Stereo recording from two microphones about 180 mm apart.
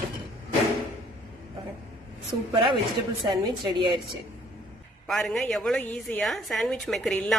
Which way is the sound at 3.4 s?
25° right (ahead or behind).